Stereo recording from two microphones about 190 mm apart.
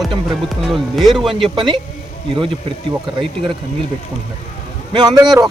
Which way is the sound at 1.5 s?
25° right (ahead or behind).